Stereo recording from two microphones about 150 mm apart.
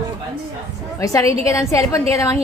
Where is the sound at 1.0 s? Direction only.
20° left (ahead or behind).